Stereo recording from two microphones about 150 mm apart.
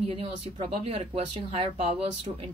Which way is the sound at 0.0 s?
35° right (ahead or behind).